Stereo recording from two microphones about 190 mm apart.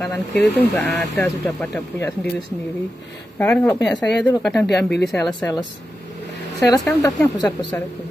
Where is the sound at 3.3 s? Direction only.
10° left (ahead or behind).